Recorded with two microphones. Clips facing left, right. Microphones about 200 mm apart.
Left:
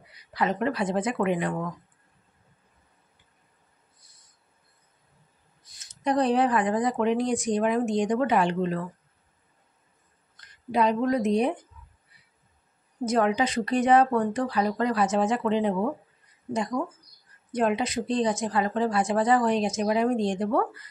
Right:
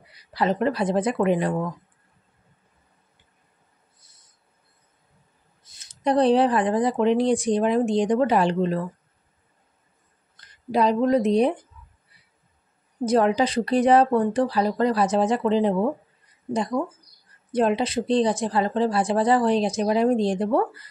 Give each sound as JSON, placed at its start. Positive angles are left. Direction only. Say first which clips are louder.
{"t": 0.3, "sound": "speech", "louder": "right 4 dB", "side_deg": -35}
{"t": 5.7, "sound": "speech", "louder": "right 4 dB", "side_deg": -30}
{"t": 10.7, "sound": "speech", "louder": "right 4 dB", "side_deg": -35}
{"t": 13.0, "sound": "speech", "louder": "right 4 dB", "side_deg": -35}
{"t": 17.5, "sound": "speech", "louder": "right 4 dB", "side_deg": -30}